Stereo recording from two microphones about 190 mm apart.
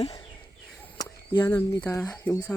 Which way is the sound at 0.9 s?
20° left (ahead or behind).